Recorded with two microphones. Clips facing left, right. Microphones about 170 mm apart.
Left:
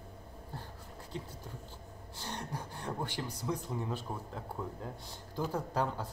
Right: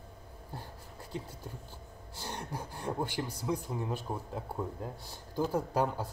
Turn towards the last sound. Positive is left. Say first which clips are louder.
# right 3 dB
turn(degrees=-10)  # may be behind; listen again after turning